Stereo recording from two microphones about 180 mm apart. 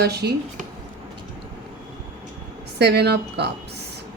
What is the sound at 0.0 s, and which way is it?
Speech, 65° right (ahead or behind).